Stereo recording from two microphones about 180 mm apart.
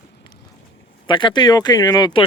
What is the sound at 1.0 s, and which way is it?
Speech, 25° left (ahead or behind).